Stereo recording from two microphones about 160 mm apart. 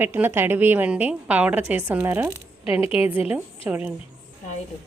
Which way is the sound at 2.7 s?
35° left (ahead or behind).